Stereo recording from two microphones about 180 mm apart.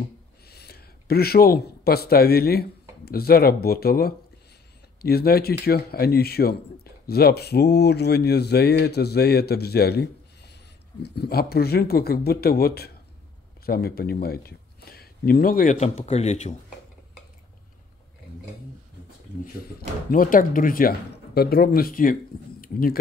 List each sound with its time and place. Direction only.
0.5 s speech: 60° left (ahead or behind); by 16.5 s 35° left (ahead or behind)
20.1 s speech: 50° left (ahead or behind)
22.6 s a sound: 55° left (ahead or behind)